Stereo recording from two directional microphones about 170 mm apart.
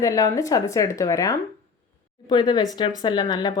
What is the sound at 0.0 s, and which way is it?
A woman's voice, 20° left (ahead or behind).